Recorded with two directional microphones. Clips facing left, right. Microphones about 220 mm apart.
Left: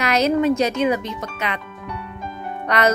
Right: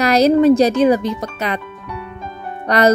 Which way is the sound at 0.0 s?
35° right (ahead or behind).